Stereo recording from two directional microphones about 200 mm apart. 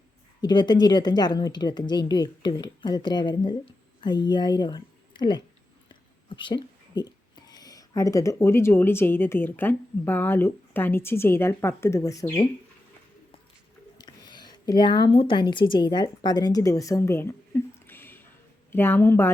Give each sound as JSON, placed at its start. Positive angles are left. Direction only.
{"t": 0.4, "sound": "a woman's voice", "side_deg": 20}
{"t": 5.9, "sound": "speech", "side_deg": 25}
{"t": 14.0, "sound": "a sound", "side_deg": 20}
{"t": 15.7, "sound": "a woman's voice", "side_deg": 20}